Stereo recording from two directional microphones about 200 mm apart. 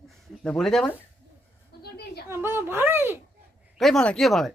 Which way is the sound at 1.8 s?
55° left (ahead or behind).